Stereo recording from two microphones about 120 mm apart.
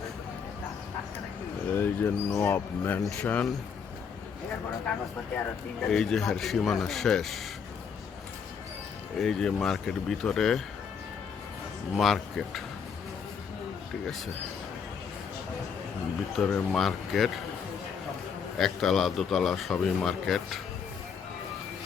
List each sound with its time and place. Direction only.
1.7 s speech: 15° left (ahead or behind)
5.9 s a man's voice: 5° left (ahead or behind)
9.1 s a man's voice: 5° left (ahead or behind)
11.9 s a man's voice: centre (ahead or behind)
16.3 s a man's voice: 5° left (ahead or behind)
18.5 s a man's voice: centre (ahead or behind)